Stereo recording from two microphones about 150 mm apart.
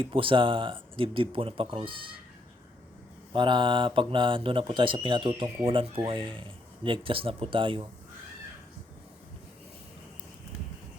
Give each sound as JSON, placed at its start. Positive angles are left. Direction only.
{"t": 0.0, "sound": "speech", "side_deg": -35}
{"t": 3.3, "sound": "speech", "side_deg": -30}